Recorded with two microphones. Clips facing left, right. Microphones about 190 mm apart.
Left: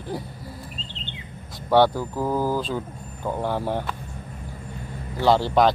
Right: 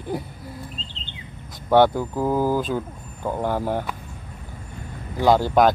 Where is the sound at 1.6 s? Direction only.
20° right (ahead or behind).